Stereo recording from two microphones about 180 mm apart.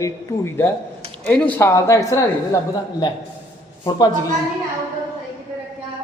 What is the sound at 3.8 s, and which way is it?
Speech, 20° left (ahead or behind).